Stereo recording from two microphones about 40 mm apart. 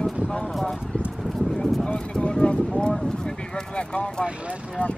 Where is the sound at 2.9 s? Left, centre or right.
Centre.